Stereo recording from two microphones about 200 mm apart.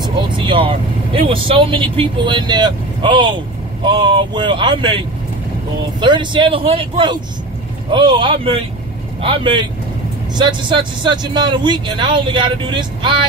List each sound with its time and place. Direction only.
0.0 s speech: 25° right (ahead or behind)